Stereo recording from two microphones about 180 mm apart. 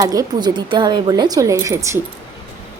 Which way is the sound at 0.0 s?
20° right (ahead or behind).